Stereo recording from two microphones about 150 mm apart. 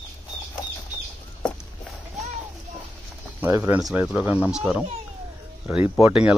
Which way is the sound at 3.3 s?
15° right (ahead or behind).